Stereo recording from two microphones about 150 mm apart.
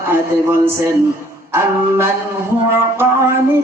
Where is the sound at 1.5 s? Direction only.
15° right (ahead or behind).